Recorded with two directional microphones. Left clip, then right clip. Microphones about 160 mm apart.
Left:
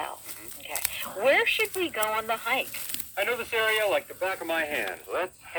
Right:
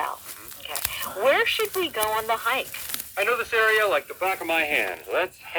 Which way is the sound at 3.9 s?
30° right (ahead or behind).